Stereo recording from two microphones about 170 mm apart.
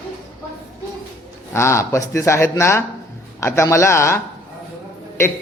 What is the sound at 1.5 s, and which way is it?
A man's voice, 15° left (ahead or behind).